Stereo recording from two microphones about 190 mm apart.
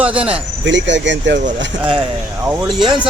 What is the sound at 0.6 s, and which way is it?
Speech, 70° right (ahead or behind).